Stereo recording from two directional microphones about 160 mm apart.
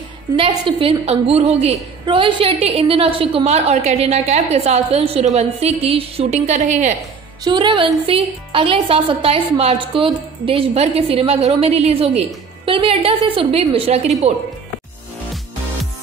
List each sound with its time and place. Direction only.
0.4 s a woman's voice: 35° right (ahead or behind); by 7.0 s 50° right (ahead or behind)
7.4 s a woman's voice: 30° right (ahead or behind)